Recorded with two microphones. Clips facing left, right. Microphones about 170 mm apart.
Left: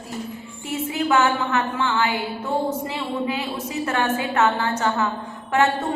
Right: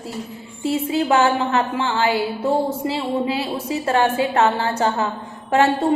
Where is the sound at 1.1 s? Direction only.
30° right (ahead or behind).